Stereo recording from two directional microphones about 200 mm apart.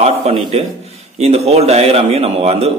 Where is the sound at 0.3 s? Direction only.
30° right (ahead or behind).